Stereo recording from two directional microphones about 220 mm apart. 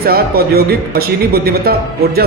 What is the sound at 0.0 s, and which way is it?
A man's voice, 45° right (ahead or behind).